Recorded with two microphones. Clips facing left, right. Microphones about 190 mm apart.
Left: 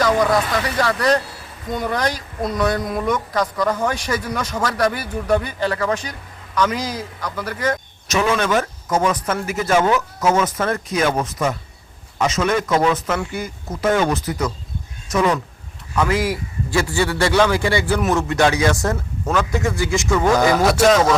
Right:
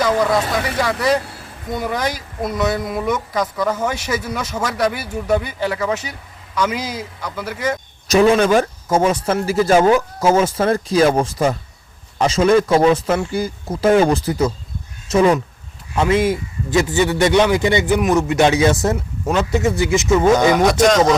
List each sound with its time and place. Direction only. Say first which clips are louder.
0.0 s speech: even; 10° right (ahead or behind)
8.0 s a man's voice: right 6 dB; 35° right (ahead or behind)
20.6 s speech: right 1 dB; 5° left (ahead or behind)